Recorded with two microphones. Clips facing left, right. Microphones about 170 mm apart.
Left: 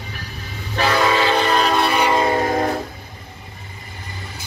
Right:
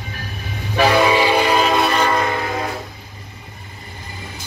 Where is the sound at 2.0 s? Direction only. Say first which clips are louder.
Left 1 dB; 20° left (ahead or behind).